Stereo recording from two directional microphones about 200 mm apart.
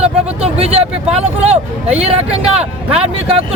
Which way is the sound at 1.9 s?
30° right (ahead or behind).